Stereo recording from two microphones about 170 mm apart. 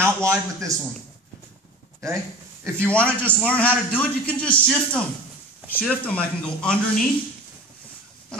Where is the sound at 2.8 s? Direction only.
5° left (ahead or behind).